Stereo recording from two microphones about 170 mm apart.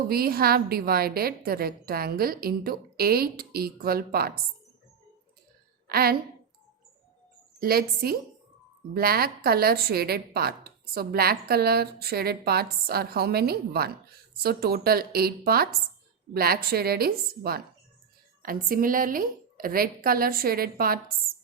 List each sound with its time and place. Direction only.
0.1 s a woman's voice: 60° right (ahead or behind)
5.9 s a woman's voice: 65° right (ahead or behind)
7.6 s a woman's voice: 65° right (ahead or behind)